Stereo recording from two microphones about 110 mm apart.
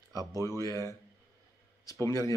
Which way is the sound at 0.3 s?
30° left (ahead or behind).